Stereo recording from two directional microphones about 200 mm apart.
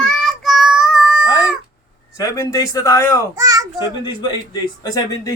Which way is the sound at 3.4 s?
15° right (ahead or behind).